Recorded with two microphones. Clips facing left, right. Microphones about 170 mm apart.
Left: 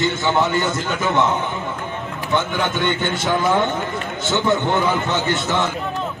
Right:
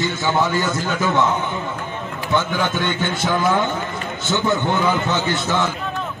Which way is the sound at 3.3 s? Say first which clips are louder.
Left 1 dB; 20° left (ahead or behind).